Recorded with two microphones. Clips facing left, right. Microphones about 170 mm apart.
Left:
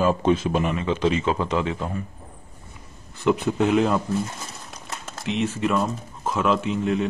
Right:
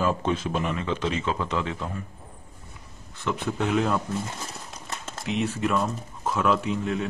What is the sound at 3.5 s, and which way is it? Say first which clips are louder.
Speech: left 2 dB; 5° left (ahead or behind).